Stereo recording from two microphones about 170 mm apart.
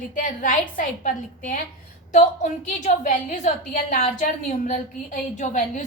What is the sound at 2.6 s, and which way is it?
A woman's voice, 45° left (ahead or behind).